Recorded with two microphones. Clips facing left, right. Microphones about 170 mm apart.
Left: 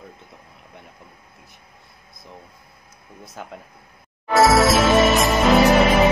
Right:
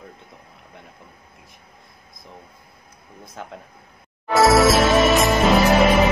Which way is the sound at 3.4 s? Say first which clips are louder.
Right 1 dB; 5° left (ahead or behind).